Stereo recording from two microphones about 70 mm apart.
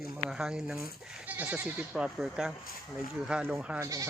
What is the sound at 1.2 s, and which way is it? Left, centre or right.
Goat, right.